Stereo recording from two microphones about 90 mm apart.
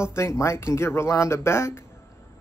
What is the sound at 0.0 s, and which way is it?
Speech, 30° left (ahead or behind).